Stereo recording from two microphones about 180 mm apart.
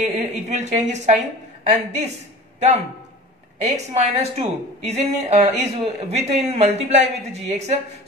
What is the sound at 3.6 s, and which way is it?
A woman's voice, 35° right (ahead or behind).